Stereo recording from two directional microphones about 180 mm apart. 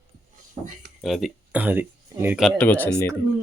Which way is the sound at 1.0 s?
Centre (ahead or behind).